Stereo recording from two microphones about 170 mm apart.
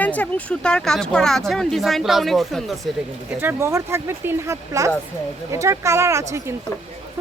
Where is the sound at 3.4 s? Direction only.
15° right (ahead or behind).